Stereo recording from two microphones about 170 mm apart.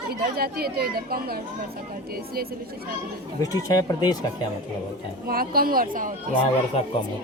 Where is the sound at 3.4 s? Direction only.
20° left (ahead or behind).